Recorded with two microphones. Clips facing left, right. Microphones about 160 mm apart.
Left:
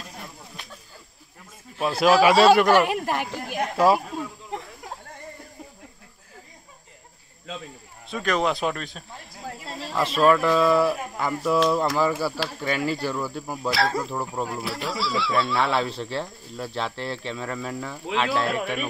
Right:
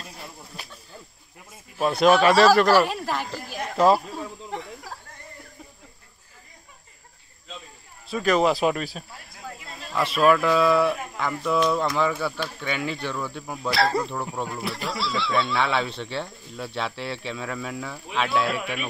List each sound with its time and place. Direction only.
1.8 s speech: 5° left (ahead or behind)
2.3 s a man's voice: 25° left (ahead or behind)
8.1 s speech: 5° right (ahead or behind)
9.4 s snake: 30° left (ahead or behind)
9.9 s speech: centre (ahead or behind)